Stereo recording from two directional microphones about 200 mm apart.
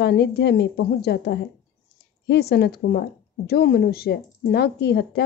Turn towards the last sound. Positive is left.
turn(degrees=55)  # may be behind; listen again after turning